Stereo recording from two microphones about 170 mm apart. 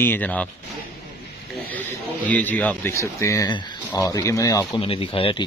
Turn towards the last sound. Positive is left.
turn(degrees=30)  # may be behind; listen again after turning